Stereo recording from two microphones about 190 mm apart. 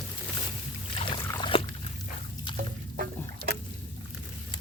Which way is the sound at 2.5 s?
50° right (ahead or behind).